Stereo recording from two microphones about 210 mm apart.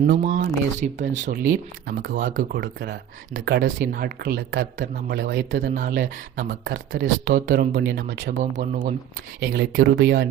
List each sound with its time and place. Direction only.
0.2 s speech: 40° right (ahead or behind)
7.0 s speech: 40° right (ahead or behind); by 8.3 s 55° right (ahead or behind)
8.5 s speech: 40° right (ahead or behind)